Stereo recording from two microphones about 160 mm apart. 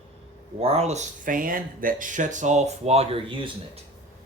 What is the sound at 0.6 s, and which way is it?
Speech, 40° right (ahead or behind).